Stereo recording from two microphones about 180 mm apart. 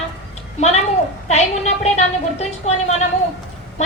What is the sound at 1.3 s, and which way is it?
A woman's voice, 35° left (ahead or behind).